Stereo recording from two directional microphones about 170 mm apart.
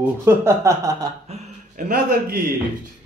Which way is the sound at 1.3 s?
40° right (ahead or behind).